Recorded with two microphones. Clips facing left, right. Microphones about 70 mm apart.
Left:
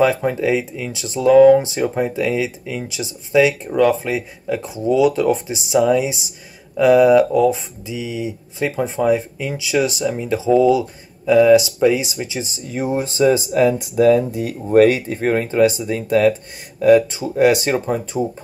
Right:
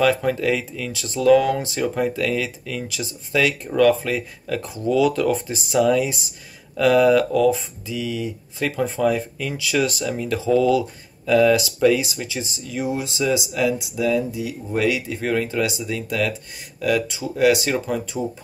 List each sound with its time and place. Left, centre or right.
0.0 s speech: left